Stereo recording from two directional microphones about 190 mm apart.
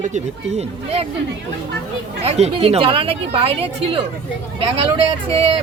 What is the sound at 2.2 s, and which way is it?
Speech, 35° right (ahead or behind).